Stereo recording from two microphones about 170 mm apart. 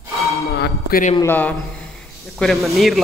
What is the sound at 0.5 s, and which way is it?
Speech, 70° left (ahead or behind).